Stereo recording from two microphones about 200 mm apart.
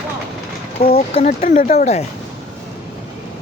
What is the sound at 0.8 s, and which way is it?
Speech, 45° left (ahead or behind).